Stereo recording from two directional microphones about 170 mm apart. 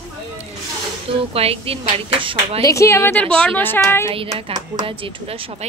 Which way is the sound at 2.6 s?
20° left (ahead or behind).